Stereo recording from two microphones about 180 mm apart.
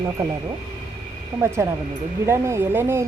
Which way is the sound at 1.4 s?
15° right (ahead or behind).